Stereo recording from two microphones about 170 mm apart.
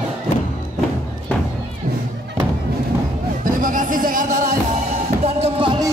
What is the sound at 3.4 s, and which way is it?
Music, 55° right (ahead or behind).